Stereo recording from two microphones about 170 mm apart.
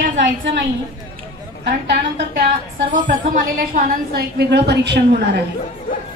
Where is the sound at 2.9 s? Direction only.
55° right (ahead or behind); by 5.0 s 80° right.